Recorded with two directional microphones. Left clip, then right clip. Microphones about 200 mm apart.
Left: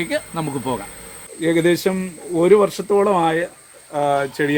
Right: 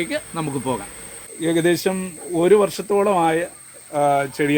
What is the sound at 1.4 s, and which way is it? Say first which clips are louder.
Speech: left 2 dB; 10° right (ahead or behind).